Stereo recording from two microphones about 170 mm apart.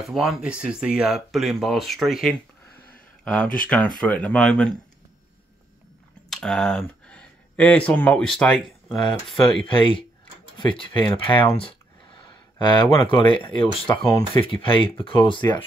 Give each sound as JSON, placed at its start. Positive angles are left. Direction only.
{"t": 0.0, "sound": "speech", "side_deg": 0}
{"t": 6.3, "sound": "speech", "side_deg": 5}
{"t": 9.7, "sound": "speech", "side_deg": 30}